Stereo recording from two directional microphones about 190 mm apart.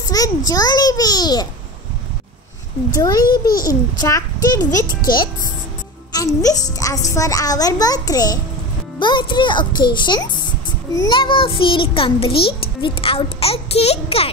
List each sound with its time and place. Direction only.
0.1 s a sound: 20° left (ahead or behind)
0.5 s a woman's voice: 20° left (ahead or behind)
3.0 s a woman's voice: 20° left (ahead or behind)